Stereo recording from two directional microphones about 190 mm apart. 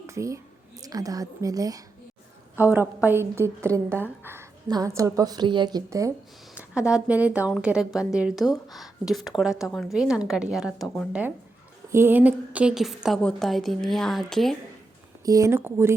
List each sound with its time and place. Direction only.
0.1 s a woman's voice: 15° right (ahead or behind)
10.8 s speech: 10° left (ahead or behind)
11.9 s speech: 15° right (ahead or behind)
15.2 s a woman's voice: 20° right (ahead or behind)